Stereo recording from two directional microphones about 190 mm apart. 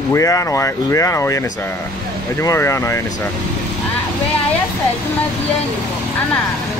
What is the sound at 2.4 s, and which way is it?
Speech, 15° left (ahead or behind).